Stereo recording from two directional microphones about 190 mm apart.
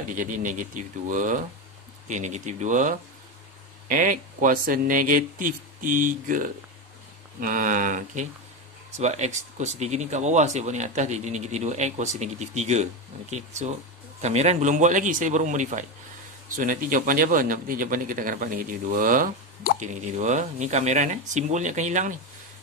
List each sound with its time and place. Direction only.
0.1 s speech: 45° right (ahead or behind)